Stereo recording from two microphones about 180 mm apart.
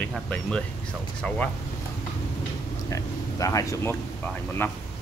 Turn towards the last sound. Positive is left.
turn(degrees=10)  # may be behind; listen again after turning